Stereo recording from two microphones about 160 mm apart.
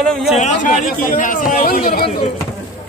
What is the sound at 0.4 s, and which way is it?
Speech, 50° left (ahead or behind).